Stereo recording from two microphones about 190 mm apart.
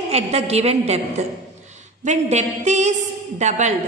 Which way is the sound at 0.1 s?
35° right (ahead or behind).